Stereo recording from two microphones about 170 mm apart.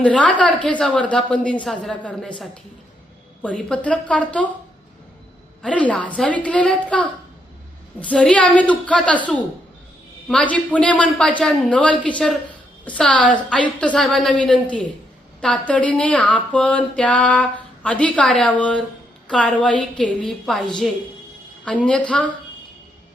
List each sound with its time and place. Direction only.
0.0 s a woman's voice: 10° left (ahead or behind)
3.4 s speech: 5° left (ahead or behind)
5.6 s a woman's voice: 5° left (ahead or behind)